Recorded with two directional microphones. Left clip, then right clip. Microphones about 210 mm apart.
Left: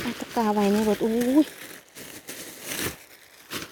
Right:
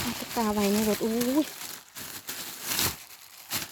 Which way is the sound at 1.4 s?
45° right (ahead or behind).